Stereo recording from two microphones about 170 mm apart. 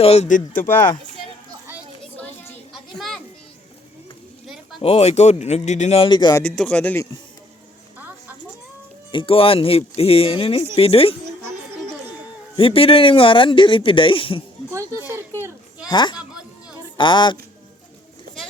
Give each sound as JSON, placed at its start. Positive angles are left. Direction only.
{"t": 0.0, "sound": "speech", "side_deg": 40}
{"t": 2.7, "sound": "children playing", "side_deg": 0}
{"t": 4.4, "sound": "a sound", "side_deg": 0}
{"t": 4.8, "sound": "speech", "side_deg": 35}
{"t": 6.4, "sound": "speech", "side_deg": 5}
{"t": 7.9, "sound": "a sound", "side_deg": -10}
{"t": 9.1, "sound": "speech", "side_deg": 35}
{"t": 12.5, "sound": "speech", "side_deg": 35}
{"t": 14.7, "sound": "speech", "side_deg": -15}
{"t": 15.9, "sound": "speech", "side_deg": 25}
{"t": 16.1, "sound": "chatter", "side_deg": -5}
{"t": 17.0, "sound": "speech", "side_deg": 25}